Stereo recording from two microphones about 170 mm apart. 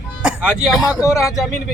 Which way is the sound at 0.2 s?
5° right (ahead or behind).